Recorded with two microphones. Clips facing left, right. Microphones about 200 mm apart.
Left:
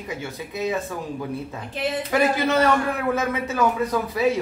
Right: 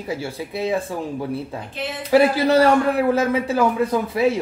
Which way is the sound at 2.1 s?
35° right (ahead or behind).